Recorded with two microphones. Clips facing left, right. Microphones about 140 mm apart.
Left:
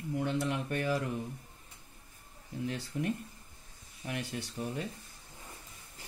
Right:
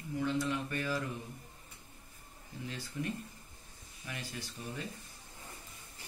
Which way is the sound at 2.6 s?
60° left (ahead or behind).